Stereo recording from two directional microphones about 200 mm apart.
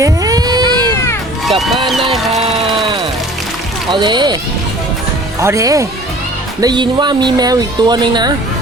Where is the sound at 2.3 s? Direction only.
30° right (ahead or behind).